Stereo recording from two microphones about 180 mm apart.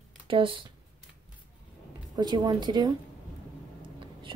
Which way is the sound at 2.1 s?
25° right (ahead or behind).